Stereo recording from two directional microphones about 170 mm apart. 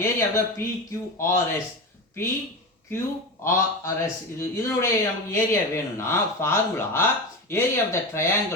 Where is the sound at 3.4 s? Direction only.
15° left (ahead or behind).